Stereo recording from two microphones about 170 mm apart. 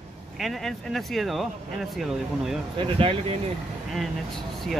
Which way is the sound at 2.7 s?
30° right (ahead or behind).